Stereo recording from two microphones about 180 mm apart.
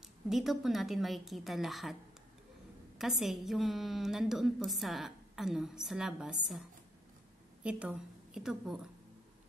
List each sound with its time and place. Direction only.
0.3 s a woman's voice: centre (ahead or behind)
3.0 s a woman's voice: centre (ahead or behind)
7.6 s a woman's voice: 5° right (ahead or behind)